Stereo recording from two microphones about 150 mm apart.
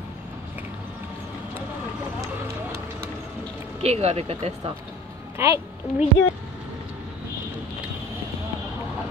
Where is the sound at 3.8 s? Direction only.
45° right (ahead or behind).